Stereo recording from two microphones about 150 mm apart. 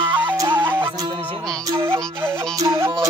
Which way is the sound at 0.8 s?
15° right (ahead or behind).